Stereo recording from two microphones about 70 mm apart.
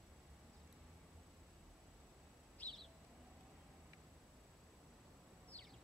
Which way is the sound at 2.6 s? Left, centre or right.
Left.